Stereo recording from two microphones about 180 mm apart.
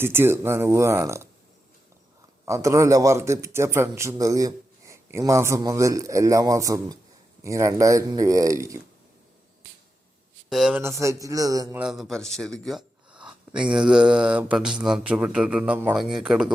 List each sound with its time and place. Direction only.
0.0 s a man's voice: 15° right (ahead or behind)
2.4 s a man's voice: 15° right (ahead or behind)
10.5 s mantra: centre (ahead or behind)
10.8 s speech: 15° right (ahead or behind)
11.8 s mantra: centre (ahead or behind)
12.6 s gasp: centre (ahead or behind)
13.7 s mantra: 5° right (ahead or behind)